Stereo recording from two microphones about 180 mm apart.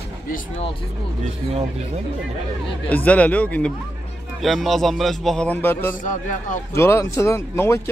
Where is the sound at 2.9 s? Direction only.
10° left (ahead or behind).